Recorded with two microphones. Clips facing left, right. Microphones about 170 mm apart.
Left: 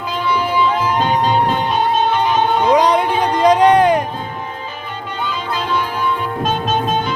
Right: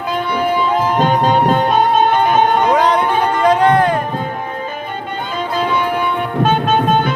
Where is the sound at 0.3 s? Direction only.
50° right (ahead or behind).